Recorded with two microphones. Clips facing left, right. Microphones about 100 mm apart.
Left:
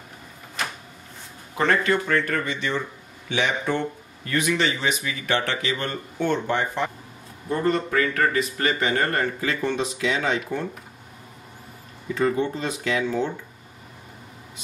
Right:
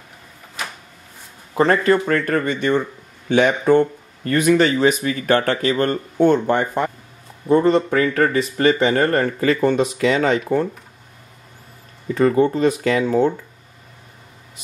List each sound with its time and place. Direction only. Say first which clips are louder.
1.5 s speech: right 6 dB; 40° right (ahead or behind)
7.4 s speech: right 8 dB; 25° right (ahead or behind)
9.4 s speech: right 8 dB; 45° right (ahead or behind)
12.1 s speech: right 7 dB; 45° right (ahead or behind)